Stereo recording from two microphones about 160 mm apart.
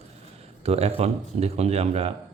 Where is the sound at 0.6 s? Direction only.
40° right (ahead or behind).